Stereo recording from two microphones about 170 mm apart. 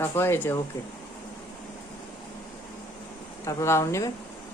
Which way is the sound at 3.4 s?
15° left (ahead or behind).